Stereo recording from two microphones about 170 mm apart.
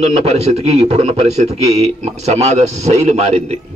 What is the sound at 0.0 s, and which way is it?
A man's voice, 40° right (ahead or behind).